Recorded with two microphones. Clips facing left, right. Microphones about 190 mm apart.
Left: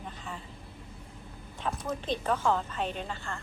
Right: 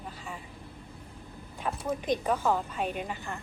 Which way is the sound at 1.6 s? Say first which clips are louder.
Right 3 dB; 10° right (ahead or behind).